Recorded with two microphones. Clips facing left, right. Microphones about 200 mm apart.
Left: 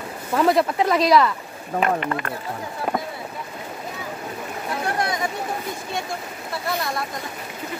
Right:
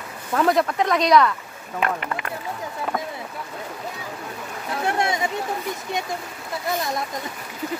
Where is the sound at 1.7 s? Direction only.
35° left (ahead or behind).